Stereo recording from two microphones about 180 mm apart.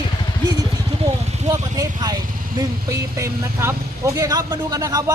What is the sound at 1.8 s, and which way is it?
Speech, 20° right (ahead or behind).